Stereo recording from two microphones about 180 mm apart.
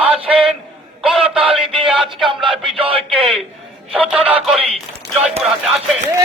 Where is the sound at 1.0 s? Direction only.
Centre (ahead or behind).